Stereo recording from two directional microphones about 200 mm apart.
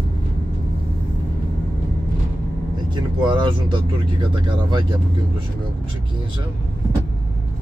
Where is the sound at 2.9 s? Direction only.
25° right (ahead or behind).